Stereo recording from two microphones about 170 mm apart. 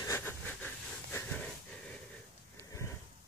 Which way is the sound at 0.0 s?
15° left (ahead or behind).